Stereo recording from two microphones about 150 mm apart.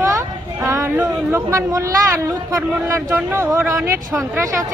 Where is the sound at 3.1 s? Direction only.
10° right (ahead or behind).